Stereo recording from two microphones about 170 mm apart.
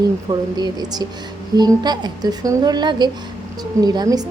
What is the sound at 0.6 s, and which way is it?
Speech, 25° right (ahead or behind).